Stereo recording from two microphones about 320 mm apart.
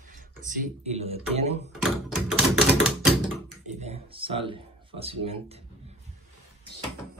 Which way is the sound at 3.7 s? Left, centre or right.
Centre.